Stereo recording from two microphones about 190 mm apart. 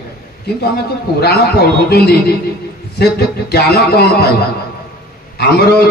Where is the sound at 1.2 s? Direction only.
55° left (ahead or behind).